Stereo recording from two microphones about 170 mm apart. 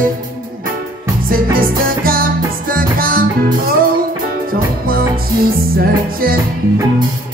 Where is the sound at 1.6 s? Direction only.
60° right (ahead or behind).